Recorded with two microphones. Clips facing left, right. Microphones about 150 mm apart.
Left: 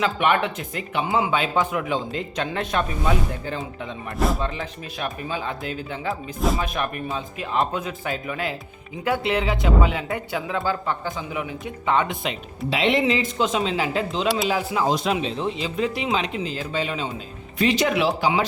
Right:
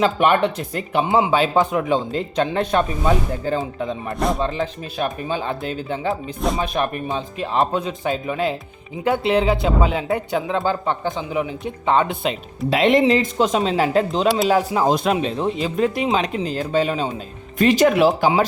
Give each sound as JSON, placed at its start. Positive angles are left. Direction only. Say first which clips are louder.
{"t": 0.0, "sound": "speech", "louder": "right 4 dB", "side_deg": -35}
{"t": 1.0, "sound": "speech", "louder": "right 4 dB", "side_deg": -25}
{"t": 1.3, "sound": "speech", "louder": "right 5 dB", "side_deg": -35}
{"t": 4.1, "sound": "speech", "louder": "right 1 dB", "side_deg": 0}
{"t": 4.4, "sound": "speech", "louder": "right 6 dB", "side_deg": -35}
{"t": 12.7, "sound": "speech", "louder": "right 5 dB", "side_deg": -45}